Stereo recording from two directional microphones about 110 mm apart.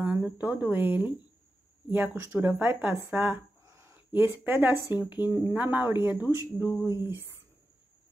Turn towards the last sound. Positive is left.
turn(degrees=-20)  # may be behind; listen again after turning